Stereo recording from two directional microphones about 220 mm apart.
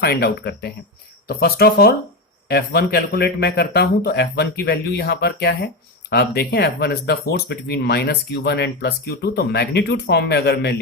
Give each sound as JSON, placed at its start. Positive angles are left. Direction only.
{"t": 0.0, "sound": "speech", "side_deg": 45}